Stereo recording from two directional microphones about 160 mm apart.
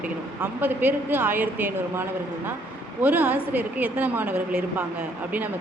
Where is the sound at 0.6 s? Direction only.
10° right (ahead or behind).